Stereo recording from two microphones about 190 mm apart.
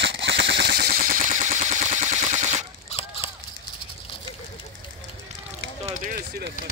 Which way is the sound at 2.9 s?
30° left (ahead or behind).